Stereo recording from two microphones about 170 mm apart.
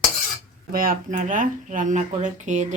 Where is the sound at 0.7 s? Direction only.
55° right (ahead or behind).